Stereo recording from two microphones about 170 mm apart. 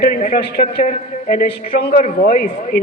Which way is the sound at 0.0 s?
55° left (ahead or behind).